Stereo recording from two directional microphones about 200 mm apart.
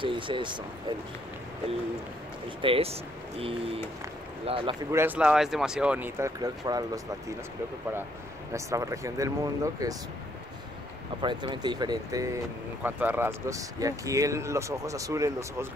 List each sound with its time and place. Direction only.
0.0 s speech: 25° right (ahead or behind)
2.6 s speech: 30° right (ahead or behind)
4.9 s speech: 10° right (ahead or behind)
8.5 s speech: 15° right (ahead or behind)
11.1 s speech: 25° right (ahead or behind)